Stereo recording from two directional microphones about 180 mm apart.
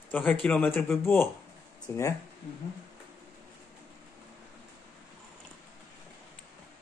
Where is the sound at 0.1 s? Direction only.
5° left (ahead or behind).